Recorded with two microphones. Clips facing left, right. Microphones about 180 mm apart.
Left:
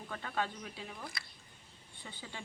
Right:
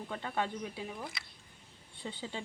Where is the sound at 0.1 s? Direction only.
25° right (ahead or behind).